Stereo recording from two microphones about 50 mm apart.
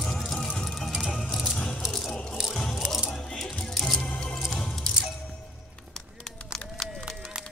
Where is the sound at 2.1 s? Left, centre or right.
Centre.